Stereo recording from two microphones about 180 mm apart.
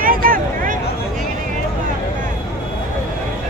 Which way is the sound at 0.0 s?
50° right (ahead or behind).